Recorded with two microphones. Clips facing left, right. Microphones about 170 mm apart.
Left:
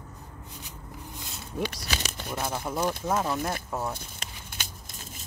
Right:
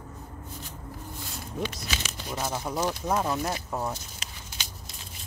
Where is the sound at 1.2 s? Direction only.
25° left (ahead or behind); by 2.3 s 45° left (ahead or behind).